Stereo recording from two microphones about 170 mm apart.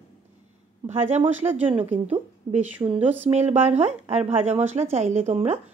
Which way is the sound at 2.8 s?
25° right (ahead or behind).